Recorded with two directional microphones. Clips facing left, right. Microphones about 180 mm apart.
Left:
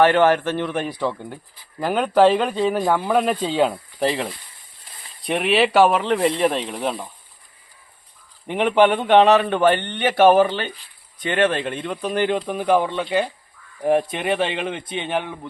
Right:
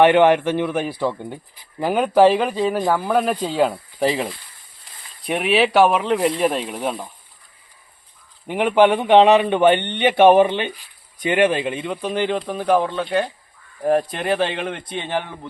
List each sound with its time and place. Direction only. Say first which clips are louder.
0.0 s a man's voice: right 2 dB; 15° right (ahead or behind)
8.4 s a man's voice: right 1 dB; 10° right (ahead or behind)